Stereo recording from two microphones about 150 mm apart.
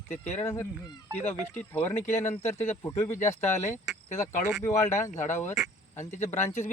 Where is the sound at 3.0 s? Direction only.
20° left (ahead or behind).